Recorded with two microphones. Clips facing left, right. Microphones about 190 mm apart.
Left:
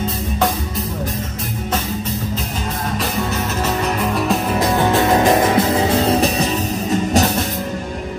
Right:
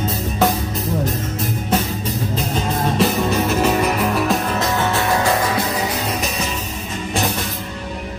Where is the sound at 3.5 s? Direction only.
10° right (ahead or behind); by 6.7 s 35° left (ahead or behind).